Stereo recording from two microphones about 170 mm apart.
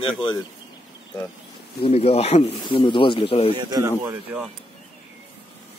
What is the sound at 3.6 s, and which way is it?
Speech, 25° right (ahead or behind).